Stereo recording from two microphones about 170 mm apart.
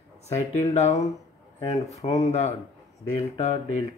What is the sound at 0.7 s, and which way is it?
Speech, 40° left (ahead or behind).